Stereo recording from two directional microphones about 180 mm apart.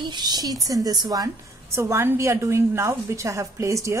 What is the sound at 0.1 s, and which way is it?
A woman's voice, 25° right (ahead or behind).